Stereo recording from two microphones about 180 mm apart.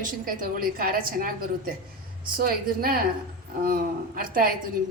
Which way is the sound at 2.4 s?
55° right (ahead or behind).